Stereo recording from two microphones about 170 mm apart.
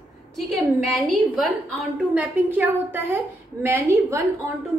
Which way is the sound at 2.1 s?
10° right (ahead or behind).